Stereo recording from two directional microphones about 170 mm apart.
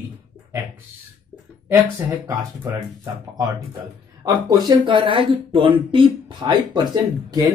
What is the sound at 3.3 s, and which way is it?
Speech, 20° right (ahead or behind).